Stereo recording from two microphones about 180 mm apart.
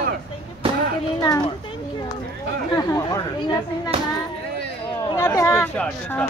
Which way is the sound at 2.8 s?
20° left (ahead or behind).